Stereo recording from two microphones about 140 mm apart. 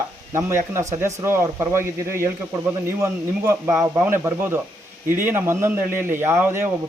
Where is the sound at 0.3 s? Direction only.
20° right (ahead or behind).